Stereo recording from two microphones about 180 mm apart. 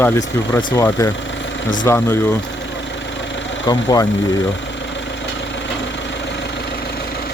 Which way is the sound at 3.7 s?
20° left (ahead or behind).